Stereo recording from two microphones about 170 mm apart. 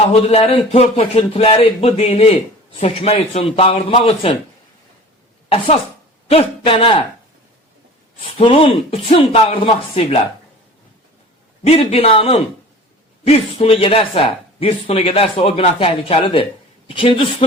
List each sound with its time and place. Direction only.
0.1 s speech: 35° left (ahead or behind)
5.5 s a woman's voice: 35° left (ahead or behind)
8.4 s speech: 30° left (ahead or behind)
11.7 s speech: 35° left (ahead or behind)